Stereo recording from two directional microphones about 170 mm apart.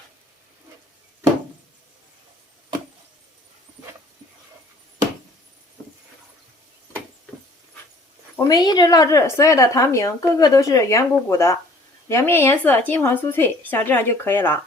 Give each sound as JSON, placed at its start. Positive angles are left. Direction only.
{"t": 8.4, "sound": "speech", "side_deg": 20}